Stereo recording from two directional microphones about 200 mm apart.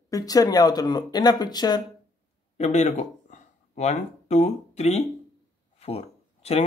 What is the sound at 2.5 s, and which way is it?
Speech, 35° left (ahead or behind).